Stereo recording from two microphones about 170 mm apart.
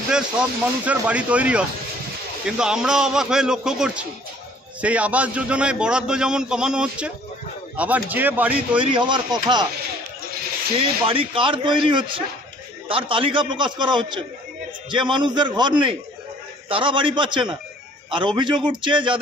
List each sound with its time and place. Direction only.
0.1 s a man's voice: 5° right (ahead or behind)
8.7 s a man's voice: 30° right (ahead or behind)
11.1 s a man's voice: 30° right (ahead or behind)